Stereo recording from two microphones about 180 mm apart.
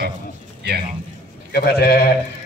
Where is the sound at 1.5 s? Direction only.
60° left (ahead or behind).